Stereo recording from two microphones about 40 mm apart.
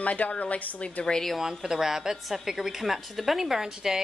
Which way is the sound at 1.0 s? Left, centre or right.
Centre.